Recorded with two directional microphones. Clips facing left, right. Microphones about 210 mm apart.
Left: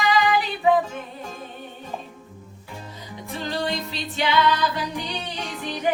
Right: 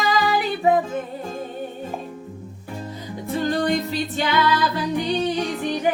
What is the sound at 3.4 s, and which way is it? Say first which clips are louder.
Music: right 6 dB; 50° right (ahead or behind).